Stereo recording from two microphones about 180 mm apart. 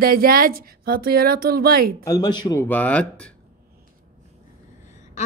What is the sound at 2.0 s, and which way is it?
Speech, 20° left (ahead or behind).